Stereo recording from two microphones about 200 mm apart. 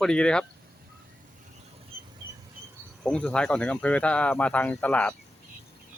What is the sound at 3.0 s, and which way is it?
Speech, 5° left (ahead or behind).